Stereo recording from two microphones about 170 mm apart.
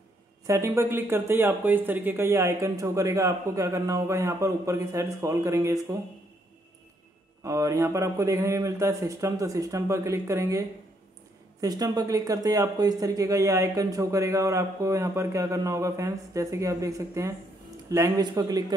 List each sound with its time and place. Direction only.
0.5 s speech: 15° right (ahead or behind)
7.4 s speech: 20° right (ahead or behind)
11.6 s speech: 20° right (ahead or behind)